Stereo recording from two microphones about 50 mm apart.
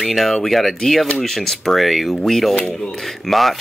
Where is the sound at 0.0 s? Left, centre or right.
Centre.